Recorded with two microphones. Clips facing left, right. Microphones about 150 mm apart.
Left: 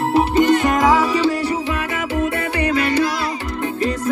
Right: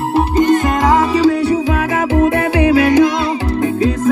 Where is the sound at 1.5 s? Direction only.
90° right.